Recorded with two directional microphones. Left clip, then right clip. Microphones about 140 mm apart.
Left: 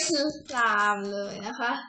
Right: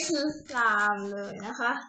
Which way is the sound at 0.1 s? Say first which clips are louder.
Left 2 dB; 10° right (ahead or behind).